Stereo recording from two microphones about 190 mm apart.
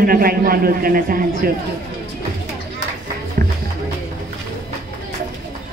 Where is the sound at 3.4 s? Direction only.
50° right (ahead or behind).